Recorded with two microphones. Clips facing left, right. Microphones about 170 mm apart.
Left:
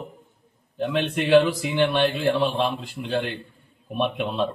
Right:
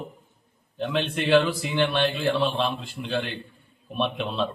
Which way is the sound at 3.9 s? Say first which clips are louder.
Left 2 dB; 10° left (ahead or behind).